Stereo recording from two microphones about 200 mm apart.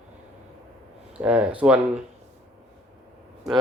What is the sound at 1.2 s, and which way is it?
Speech, 5° right (ahead or behind).